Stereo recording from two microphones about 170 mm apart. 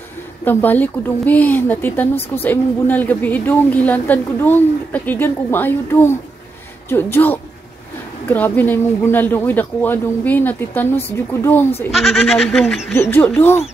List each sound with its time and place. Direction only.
0.5 s a woman's voice: 10° left (ahead or behind)
11.9 s speech: centre (ahead or behind)
12.9 s a woman's voice: 15° left (ahead or behind)